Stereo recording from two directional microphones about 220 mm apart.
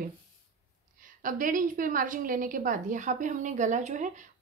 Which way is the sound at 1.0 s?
35° right (ahead or behind).